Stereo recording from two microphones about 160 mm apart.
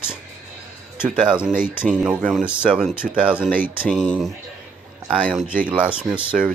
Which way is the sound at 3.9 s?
5° left (ahead or behind).